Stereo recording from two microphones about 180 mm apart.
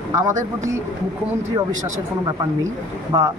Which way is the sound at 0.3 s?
45° right (ahead or behind).